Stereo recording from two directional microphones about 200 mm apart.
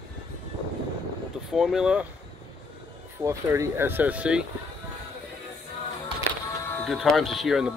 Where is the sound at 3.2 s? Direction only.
15° right (ahead or behind).